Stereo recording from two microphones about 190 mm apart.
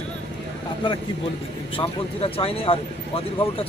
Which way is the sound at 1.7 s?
30° left (ahead or behind).